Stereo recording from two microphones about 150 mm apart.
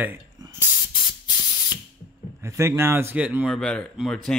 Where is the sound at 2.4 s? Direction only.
20° right (ahead or behind).